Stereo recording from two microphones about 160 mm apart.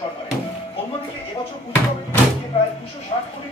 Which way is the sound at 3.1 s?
30° left (ahead or behind).